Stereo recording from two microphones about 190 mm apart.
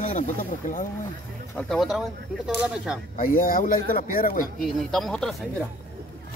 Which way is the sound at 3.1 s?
45° left (ahead or behind).